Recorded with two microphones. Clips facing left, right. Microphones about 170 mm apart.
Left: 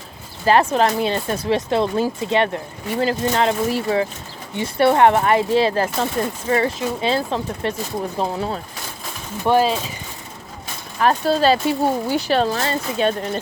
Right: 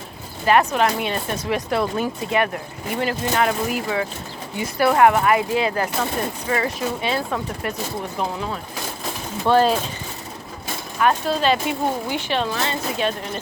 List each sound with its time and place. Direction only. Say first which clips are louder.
0.4 s speech: left 2 dB; 30° left (ahead or behind)
9.5 s speech: even; 15° left (ahead or behind)
11.0 s speech: left 3 dB; 35° left (ahead or behind)